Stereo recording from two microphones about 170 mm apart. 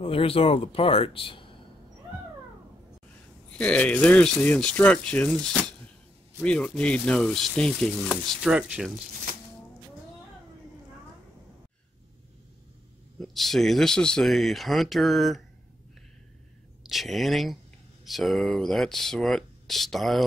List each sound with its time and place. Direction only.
0.0 s speech: 35° left (ahead or behind)
3.4 s speech: 5° left (ahead or behind)
13.2 s speech: centre (ahead or behind)
16.8 s speech: centre (ahead or behind)